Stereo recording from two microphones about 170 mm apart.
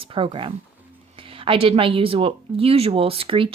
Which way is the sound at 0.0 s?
30° right (ahead or behind).